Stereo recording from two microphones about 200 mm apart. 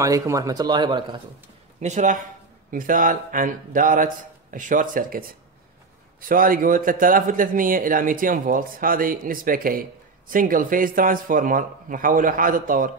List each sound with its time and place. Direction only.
0.0 s a man's voice: 15° right (ahead or behind)
1.8 s a man's voice: 35° right (ahead or behind)
6.2 s a man's voice: 45° right (ahead or behind)